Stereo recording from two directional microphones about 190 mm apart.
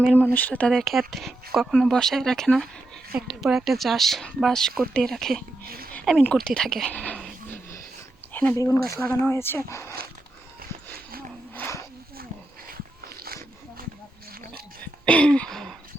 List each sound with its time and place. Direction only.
0.1 s speech: 10° left (ahead or behind)
5.6 s a woman's voice: 50° right (ahead or behind)
5.9 s speech: 5° left (ahead or behind)
11.5 s a sound: 10° left (ahead or behind)
12.6 s dog: 50° right (ahead or behind)
15.0 s a sound: 5° left (ahead or behind)